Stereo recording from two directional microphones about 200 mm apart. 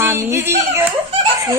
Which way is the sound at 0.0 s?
10° right (ahead or behind).